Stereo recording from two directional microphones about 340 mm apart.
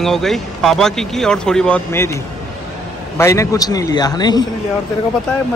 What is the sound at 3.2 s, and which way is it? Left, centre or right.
A man's voice, centre.